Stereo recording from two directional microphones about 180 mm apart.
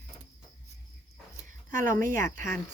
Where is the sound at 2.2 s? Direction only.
50° right (ahead or behind).